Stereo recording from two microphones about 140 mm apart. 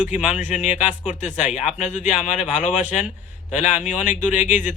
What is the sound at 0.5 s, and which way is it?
Speech, 55° left (ahead or behind).